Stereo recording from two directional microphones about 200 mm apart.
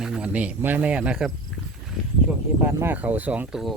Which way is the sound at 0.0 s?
5° right (ahead or behind).